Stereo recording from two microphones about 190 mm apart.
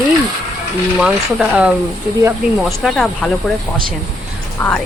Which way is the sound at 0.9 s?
5° right (ahead or behind).